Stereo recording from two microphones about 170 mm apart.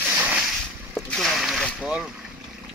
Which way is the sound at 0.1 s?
5° right (ahead or behind).